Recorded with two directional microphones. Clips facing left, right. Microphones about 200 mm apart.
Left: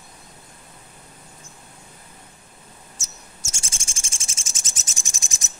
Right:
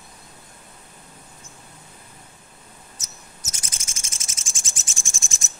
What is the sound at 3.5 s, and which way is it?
Cricket, 30° left (ahead or behind).